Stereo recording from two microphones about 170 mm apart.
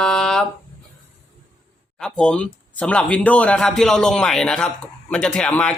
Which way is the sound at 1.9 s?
5° left (ahead or behind).